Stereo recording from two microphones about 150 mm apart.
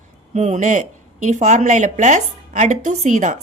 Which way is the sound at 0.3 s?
50° right (ahead or behind).